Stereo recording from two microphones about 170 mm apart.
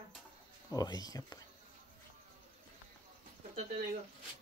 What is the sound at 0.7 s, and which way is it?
Speech, 20° left (ahead or behind).